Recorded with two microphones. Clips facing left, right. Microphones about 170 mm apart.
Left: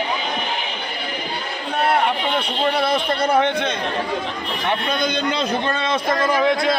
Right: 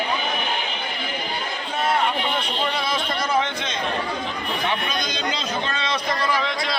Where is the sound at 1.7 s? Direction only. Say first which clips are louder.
Left 3 dB; 65° left (ahead or behind).